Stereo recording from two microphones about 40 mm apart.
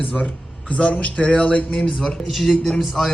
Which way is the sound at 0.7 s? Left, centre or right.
Left.